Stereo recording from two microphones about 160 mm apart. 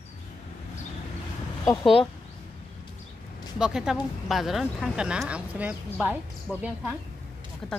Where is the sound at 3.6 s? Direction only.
5° right (ahead or behind).